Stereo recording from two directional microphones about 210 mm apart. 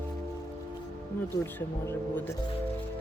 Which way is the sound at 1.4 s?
10° left (ahead or behind).